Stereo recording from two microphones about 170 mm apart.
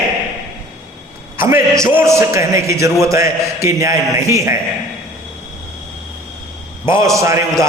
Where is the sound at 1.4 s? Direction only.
15° right (ahead or behind).